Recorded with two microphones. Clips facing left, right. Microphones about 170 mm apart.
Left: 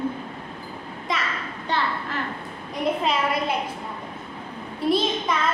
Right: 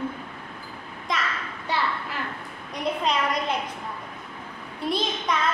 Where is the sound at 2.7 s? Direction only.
5° left (ahead or behind).